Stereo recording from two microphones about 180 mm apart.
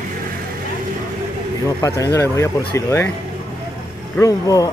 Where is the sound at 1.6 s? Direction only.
15° left (ahead or behind).